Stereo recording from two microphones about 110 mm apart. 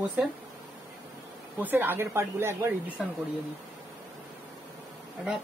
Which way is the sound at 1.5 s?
20° right (ahead or behind).